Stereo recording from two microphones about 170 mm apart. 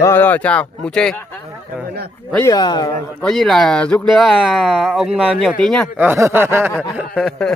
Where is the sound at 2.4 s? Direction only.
25° left (ahead or behind).